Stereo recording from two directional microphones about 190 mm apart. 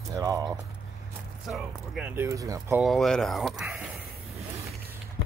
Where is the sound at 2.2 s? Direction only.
15° right (ahead or behind).